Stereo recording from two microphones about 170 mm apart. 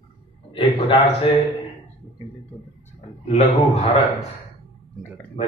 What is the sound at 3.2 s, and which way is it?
Speech, 40° left (ahead or behind).